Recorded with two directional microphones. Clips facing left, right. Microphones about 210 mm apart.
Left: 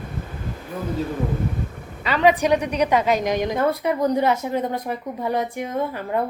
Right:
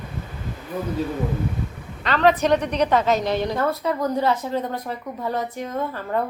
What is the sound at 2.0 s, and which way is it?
A woman's voice, 10° left (ahead or behind).